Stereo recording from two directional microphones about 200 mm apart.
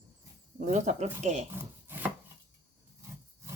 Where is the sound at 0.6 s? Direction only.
35° right (ahead or behind).